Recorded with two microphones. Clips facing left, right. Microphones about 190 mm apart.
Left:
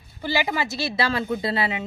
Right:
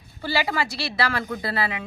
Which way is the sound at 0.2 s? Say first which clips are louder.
Even; 20° left (ahead or behind).